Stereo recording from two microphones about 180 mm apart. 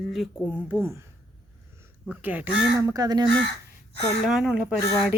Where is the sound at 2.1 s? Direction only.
10° right (ahead or behind).